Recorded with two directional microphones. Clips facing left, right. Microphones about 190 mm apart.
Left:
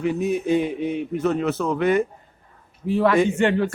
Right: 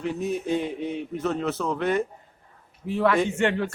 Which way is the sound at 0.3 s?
5° left (ahead or behind).